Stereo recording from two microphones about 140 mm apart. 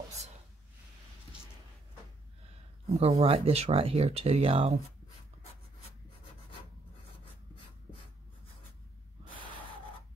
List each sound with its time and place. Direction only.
2.9 s speech: 45° right (ahead or behind)